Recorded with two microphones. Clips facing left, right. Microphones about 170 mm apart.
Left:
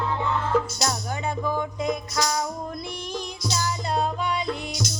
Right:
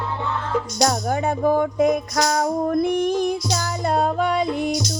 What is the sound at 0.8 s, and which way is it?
Music, 45° right (ahead or behind).